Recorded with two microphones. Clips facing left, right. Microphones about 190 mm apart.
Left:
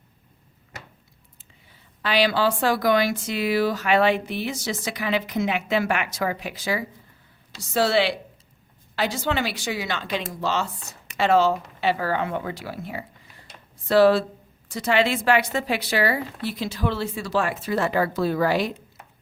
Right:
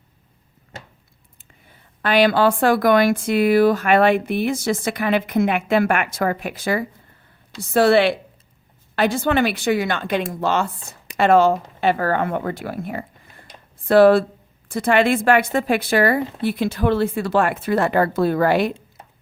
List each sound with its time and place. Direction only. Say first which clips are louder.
1.4 s a woman's voice: right 5 dB; 55° right (ahead or behind)